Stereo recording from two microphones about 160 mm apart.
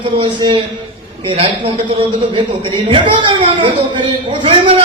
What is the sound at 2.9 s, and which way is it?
A man's voice, 30° right (ahead or behind).